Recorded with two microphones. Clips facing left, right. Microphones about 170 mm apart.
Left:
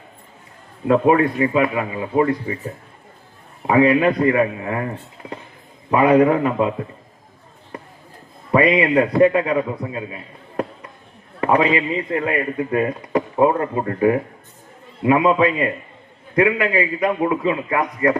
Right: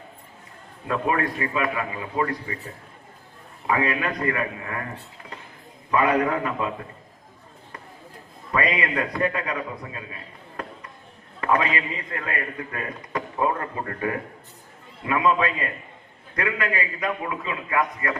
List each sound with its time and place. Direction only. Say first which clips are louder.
0.9 s speech: left 10 dB; 25° left (ahead or behind)
3.7 s speech: left 10 dB; 25° left (ahead or behind)
5.9 s speech: left 7 dB; 25° left (ahead or behind)
8.5 s speech: left 9 dB; 30° left (ahead or behind)
11.3 s speech: left 6 dB; 25° left (ahead or behind)